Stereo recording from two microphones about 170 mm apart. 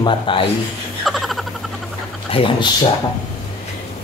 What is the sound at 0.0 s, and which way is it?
Speech, 30° left (ahead or behind).